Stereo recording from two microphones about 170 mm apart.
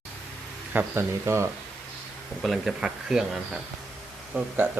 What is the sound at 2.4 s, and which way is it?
Speech, centre (ahead or behind).